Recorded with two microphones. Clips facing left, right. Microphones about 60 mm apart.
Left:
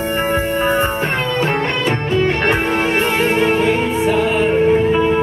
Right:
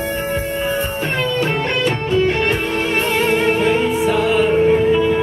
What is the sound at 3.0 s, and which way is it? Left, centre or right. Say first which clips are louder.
Music: right 1 dB; left.